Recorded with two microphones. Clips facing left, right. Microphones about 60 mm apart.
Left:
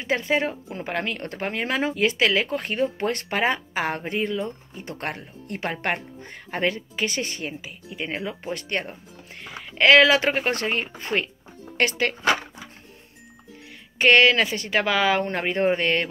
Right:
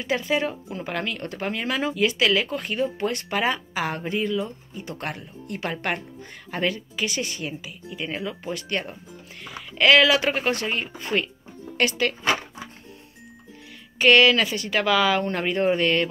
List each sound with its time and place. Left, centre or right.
0.0 s speech: left
13.9 s speech: left